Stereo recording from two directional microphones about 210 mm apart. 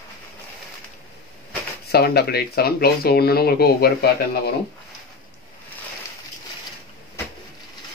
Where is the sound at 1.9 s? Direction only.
50° left (ahead or behind).